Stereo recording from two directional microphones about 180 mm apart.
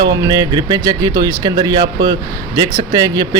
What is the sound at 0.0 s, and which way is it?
Speech, 25° right (ahead or behind).